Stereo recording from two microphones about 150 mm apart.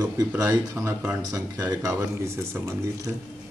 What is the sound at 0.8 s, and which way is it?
Speech, 15° right (ahead or behind).